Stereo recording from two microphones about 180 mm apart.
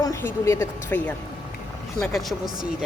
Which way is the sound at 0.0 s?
15° left (ahead or behind).